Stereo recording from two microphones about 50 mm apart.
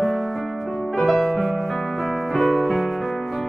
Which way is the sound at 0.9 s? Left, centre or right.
Centre.